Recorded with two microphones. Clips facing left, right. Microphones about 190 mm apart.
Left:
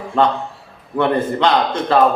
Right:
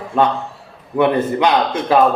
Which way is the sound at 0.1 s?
10° right (ahead or behind).